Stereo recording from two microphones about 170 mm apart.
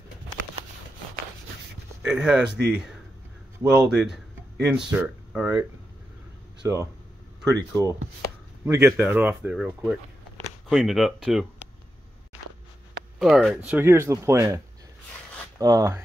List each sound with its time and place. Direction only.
2.0 s speech: 5° right (ahead or behind)
8.6 s speech: 10° right (ahead or behind)
13.2 s speech: centre (ahead or behind)
13.6 s speech: 10° right (ahead or behind)
15.6 s speech: 20° right (ahead or behind)